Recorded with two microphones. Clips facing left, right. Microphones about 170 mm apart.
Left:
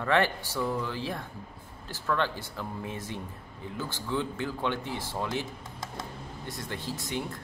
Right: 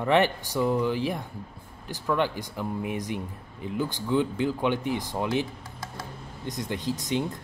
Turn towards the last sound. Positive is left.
turn(degrees=-20)  # may be behind; listen again after turning